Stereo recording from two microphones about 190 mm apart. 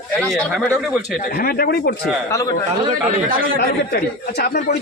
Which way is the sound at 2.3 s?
15° left (ahead or behind).